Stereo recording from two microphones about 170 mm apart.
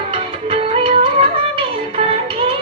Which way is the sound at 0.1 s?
30° right (ahead or behind).